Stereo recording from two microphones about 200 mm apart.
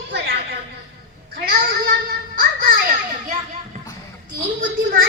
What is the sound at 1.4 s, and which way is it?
Children playing, 45° right (ahead or behind).